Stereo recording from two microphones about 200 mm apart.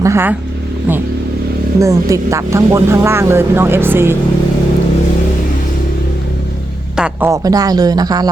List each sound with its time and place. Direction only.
0.0 s speech: 15° right (ahead or behind)
1.8 s speech: 15° right (ahead or behind)
6.9 s music: 5° right (ahead or behind)
7.3 s speech: 20° right (ahead or behind)